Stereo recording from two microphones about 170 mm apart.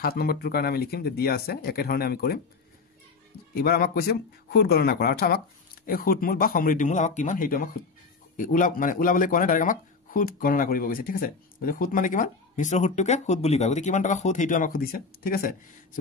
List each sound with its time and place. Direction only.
0.0 s speech: 65° left (ahead or behind)
3.5 s speech: 65° left (ahead or behind)